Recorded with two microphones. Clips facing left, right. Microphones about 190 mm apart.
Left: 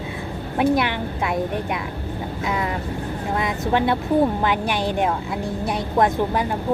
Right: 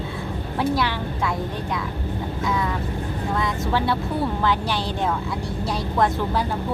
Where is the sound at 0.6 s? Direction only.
20° left (ahead or behind).